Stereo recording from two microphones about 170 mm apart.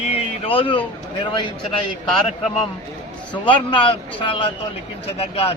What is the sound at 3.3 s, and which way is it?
A man's voice, 30° left (ahead or behind).